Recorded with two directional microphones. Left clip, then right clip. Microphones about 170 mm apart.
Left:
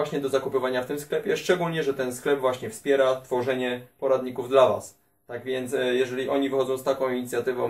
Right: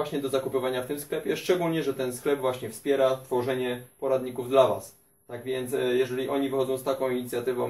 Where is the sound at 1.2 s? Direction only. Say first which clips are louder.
Left 1 dB; centre (ahead or behind).